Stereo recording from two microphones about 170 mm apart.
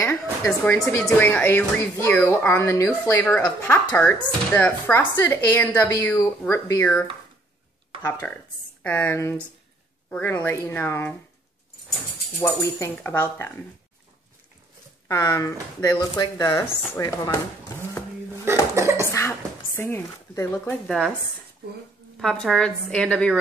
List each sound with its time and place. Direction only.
0.0 s a sound: 15° left (ahead or behind)
0.5 s speech: 5° left (ahead or behind)
12.4 s speech: 15° left (ahead or behind)
15.0 s speech: 20° left (ahead or behind)
18.4 s cough: 15° right (ahead or behind)
19.1 s a sound: 15° left (ahead or behind)
20.8 s a woman's voice: centre (ahead or behind)
22.2 s a woman's voice: centre (ahead or behind)